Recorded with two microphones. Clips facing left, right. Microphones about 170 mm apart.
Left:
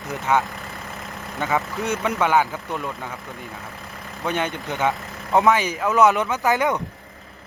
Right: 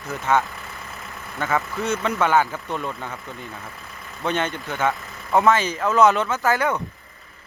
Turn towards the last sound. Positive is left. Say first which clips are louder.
# left 1 dB
turn(degrees=20)  # may be behind; listen again after turning